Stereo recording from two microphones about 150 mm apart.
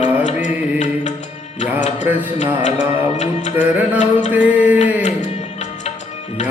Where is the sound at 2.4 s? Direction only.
55° left (ahead or behind).